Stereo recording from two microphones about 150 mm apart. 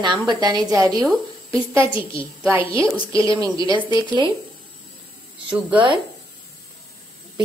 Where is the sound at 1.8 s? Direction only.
35° left (ahead or behind).